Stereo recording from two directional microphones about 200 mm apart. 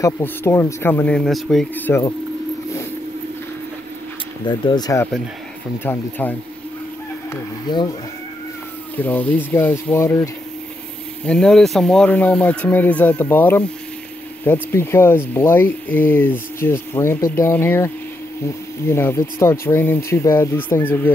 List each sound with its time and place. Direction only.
0.0 s speech: 15° left (ahead or behind)
4.5 s speech: 20° left (ahead or behind)
7.7 s speech: 20° left (ahead or behind)
8.9 s speech: 10° left (ahead or behind)